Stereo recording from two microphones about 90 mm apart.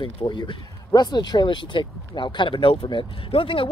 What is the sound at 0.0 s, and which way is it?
Speech, 65° left (ahead or behind).